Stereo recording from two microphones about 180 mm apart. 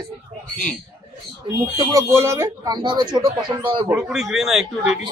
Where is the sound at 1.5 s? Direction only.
15° right (ahead or behind).